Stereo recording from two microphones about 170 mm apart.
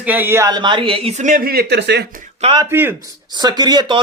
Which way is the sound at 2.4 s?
25° right (ahead or behind).